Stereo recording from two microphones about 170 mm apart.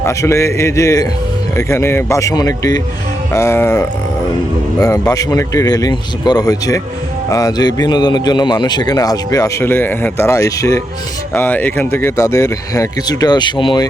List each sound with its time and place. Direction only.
0.0 s a man's voice: 15° left (ahead or behind)